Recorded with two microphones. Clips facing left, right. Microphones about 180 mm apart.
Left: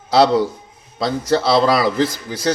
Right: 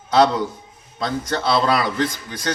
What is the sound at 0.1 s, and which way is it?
A man's voice, 30° left (ahead or behind).